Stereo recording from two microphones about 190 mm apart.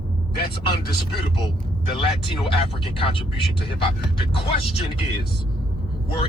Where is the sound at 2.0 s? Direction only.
30° left (ahead or behind).